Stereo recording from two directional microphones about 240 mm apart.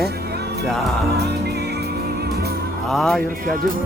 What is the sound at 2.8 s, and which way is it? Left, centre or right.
Speech, centre.